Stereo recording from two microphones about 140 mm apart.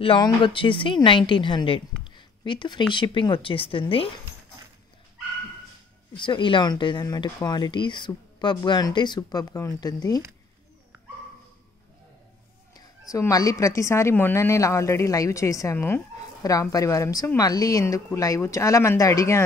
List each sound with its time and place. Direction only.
0.0 s speech: 35° left (ahead or behind)
6.1 s a woman's voice: 35° left (ahead or behind)
12.7 s a woman's voice: 25° left (ahead or behind)